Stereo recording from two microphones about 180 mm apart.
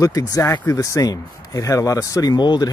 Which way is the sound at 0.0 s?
20° left (ahead or behind).